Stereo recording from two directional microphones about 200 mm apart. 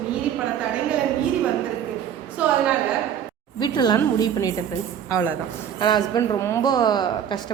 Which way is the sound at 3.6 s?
20° left (ahead or behind).